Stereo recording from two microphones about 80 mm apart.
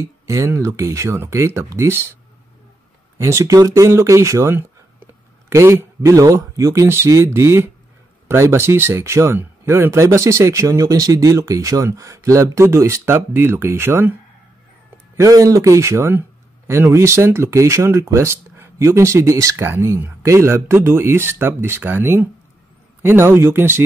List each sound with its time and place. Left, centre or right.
0.0 s speech: right
3.2 s speech: right
15.1 s speech: right